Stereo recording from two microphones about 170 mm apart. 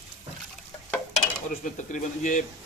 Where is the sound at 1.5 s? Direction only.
50° left (ahead or behind).